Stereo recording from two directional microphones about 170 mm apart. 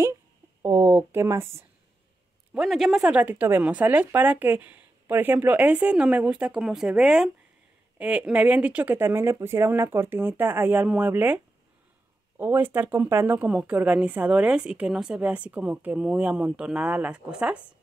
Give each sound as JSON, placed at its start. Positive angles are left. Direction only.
{"t": 0.6, "sound": "speech", "side_deg": -20}
{"t": 2.5, "sound": "speech", "side_deg": 0}